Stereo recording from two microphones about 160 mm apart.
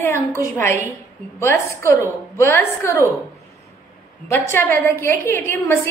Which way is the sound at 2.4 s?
15° left (ahead or behind).